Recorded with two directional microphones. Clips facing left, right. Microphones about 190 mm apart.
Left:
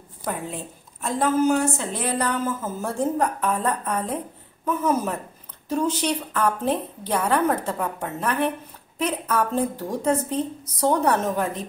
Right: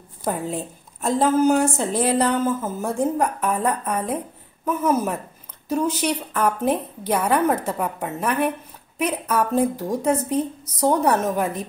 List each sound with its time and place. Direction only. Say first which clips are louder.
0.2 s speech: right 5 dB; 35° right (ahead or behind)
2.8 s a woman's voice: right 1 dB; 10° right (ahead or behind)